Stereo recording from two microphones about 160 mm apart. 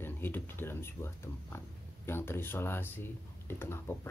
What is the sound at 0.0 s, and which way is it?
Speech, 15° left (ahead or behind).